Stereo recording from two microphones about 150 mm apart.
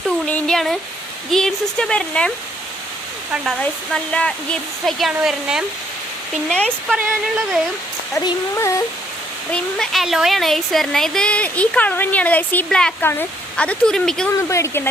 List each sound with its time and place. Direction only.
0.3 s speech: 5° left (ahead or behind)
3.6 s speech: 5° left (ahead or behind)
6.9 s speech: 5° right (ahead or behind)
8.2 s speech: 20° left (ahead or behind)
9.5 s speech: 5° left (ahead or behind)
14.5 s speech: 15° left (ahead or behind)